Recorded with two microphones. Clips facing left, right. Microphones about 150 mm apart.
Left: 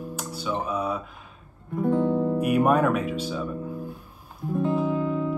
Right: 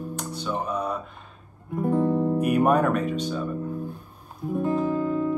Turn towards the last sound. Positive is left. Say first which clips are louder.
# right 1 dB
turn(degrees=0)  # may be behind; listen again after turning